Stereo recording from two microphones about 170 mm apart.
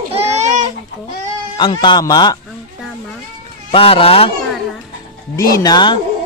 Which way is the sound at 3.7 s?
35° left (ahead or behind).